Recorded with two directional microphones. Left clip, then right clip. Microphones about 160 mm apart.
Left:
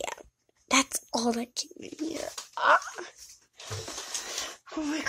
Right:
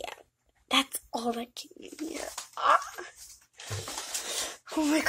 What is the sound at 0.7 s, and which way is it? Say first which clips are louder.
Speech: left 2 dB; 40° left (ahead or behind).